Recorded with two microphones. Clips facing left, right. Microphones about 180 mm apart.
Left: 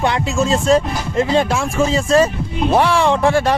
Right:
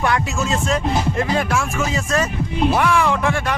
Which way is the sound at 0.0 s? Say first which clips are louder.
Left 3 dB; 30° left (ahead or behind).